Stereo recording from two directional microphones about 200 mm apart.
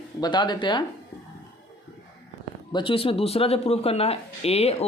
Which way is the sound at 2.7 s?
25° left (ahead or behind).